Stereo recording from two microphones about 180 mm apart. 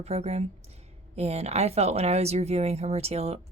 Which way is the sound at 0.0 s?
35° right (ahead or behind).